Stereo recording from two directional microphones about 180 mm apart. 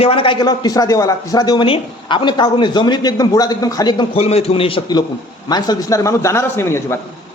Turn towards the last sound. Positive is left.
turn(degrees=15)  # may be behind; listen again after turning